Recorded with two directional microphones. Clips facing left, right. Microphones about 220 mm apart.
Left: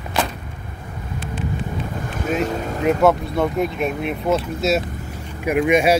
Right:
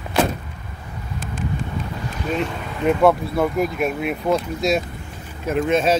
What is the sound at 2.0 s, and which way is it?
Boat, 50° left (ahead or behind).